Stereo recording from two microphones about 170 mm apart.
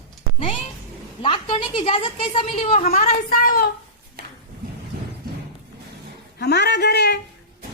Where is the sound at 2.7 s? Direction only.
55° left (ahead or behind).